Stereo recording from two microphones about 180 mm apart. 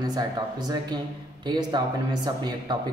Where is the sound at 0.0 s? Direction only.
20° right (ahead or behind).